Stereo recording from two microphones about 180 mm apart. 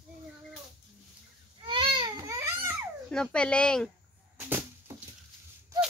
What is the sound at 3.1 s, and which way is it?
Speech, 5° left (ahead or behind).